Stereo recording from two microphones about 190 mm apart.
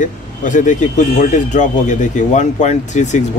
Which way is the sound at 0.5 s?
40° left (ahead or behind).